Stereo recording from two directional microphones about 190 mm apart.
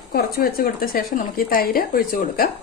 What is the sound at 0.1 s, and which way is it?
Speech, 55° left (ahead or behind).